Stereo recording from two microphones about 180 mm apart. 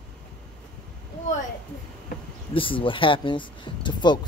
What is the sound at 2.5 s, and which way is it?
Speech, 30° left (ahead or behind).